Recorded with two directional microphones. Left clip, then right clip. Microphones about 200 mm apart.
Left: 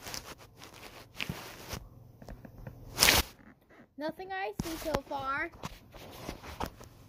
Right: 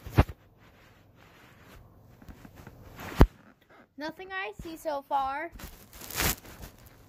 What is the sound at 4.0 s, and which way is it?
Speech, 25° right (ahead or behind).